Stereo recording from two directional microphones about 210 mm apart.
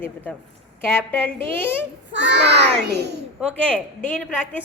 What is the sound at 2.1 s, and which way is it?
A child's voice, 55° right (ahead or behind).